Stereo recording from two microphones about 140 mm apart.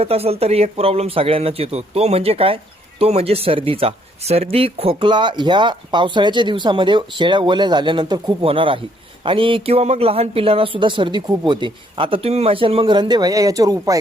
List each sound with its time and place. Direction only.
0.0 s a man's voice: 45° right (ahead or behind); by 14.0 s 25° right (ahead or behind)